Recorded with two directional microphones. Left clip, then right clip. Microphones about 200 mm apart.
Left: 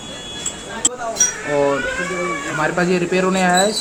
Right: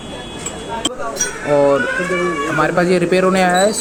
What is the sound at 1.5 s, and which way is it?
Speech, 25° right (ahead or behind).